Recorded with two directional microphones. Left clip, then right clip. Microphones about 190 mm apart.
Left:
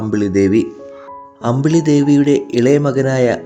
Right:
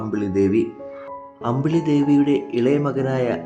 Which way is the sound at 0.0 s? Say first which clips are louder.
Left 6 dB; 30° left (ahead or behind).